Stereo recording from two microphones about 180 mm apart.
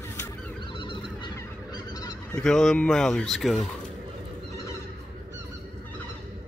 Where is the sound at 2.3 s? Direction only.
5° left (ahead or behind).